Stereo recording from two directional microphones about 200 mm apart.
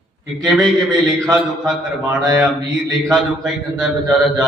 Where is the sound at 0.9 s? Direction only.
15° right (ahead or behind).